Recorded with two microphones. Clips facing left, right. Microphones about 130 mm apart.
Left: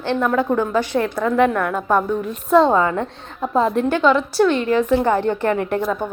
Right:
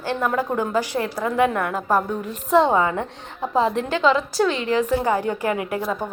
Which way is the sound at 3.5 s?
45° left (ahead or behind).